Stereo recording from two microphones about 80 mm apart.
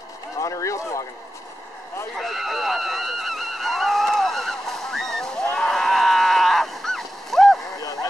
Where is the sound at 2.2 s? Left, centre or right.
Centre.